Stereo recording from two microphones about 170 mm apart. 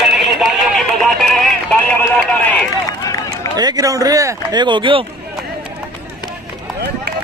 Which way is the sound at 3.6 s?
20° right (ahead or behind).